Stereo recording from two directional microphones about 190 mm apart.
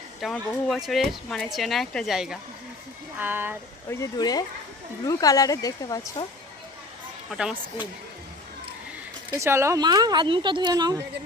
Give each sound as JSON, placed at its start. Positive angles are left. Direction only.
{"t": 0.2, "sound": "speech", "side_deg": 0}
{"t": 3.8, "sound": "speech", "side_deg": 15}
{"t": 7.3, "sound": "speech", "side_deg": -5}
{"t": 9.3, "sound": "speech", "side_deg": -15}